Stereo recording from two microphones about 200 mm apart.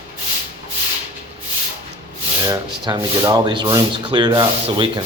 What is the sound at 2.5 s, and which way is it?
Speech, 20° right (ahead or behind).